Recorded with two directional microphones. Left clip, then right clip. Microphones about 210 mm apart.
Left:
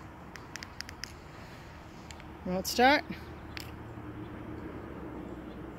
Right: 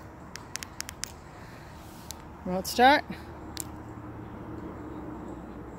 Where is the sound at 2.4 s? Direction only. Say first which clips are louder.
Right 4 dB; centre (ahead or behind).